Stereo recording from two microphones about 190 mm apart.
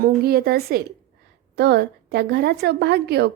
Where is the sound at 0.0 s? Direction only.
55° right (ahead or behind).